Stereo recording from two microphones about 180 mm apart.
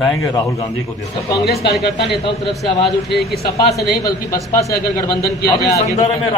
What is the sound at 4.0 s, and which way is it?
A man's voice, 15° left (ahead or behind).